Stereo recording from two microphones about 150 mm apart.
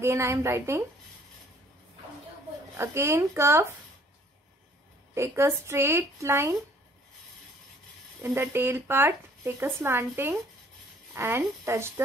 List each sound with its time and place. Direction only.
0.0 s speech: 15° right (ahead or behind)
2.8 s speech: 20° right (ahead or behind)
5.1 s speech: 15° right (ahead or behind)
8.2 s speech: 15° right (ahead or behind)